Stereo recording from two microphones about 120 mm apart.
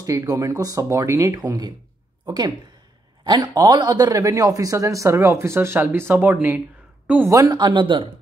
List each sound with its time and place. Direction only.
0.0 s a man's voice: 30° right (ahead or behind)
7.2 s speech: 30° right (ahead or behind)